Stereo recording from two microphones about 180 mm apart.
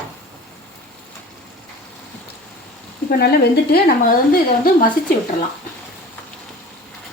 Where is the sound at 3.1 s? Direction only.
60° left (ahead or behind).